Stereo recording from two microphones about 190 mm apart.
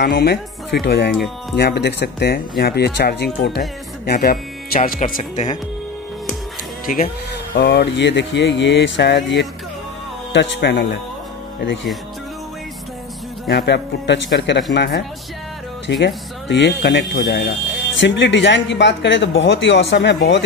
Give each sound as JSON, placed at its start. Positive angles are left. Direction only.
{"t": 0.0, "sound": "speech", "side_deg": 60}
{"t": 6.9, "sound": "speech", "side_deg": 45}
{"t": 7.5, "sound": "speech", "side_deg": 60}
{"t": 13.5, "sound": "speech", "side_deg": 60}